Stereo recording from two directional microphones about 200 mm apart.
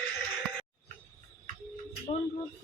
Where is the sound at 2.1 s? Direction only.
30° left (ahead or behind).